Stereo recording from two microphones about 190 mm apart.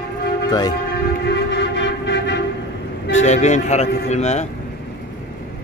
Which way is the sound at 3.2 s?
35° left (ahead or behind).